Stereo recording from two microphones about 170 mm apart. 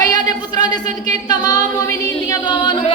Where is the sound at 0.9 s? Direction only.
45° right (ahead or behind).